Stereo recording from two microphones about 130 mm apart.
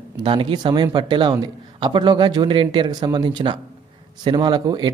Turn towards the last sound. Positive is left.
turn(degrees=-35)  # may be behind; listen again after turning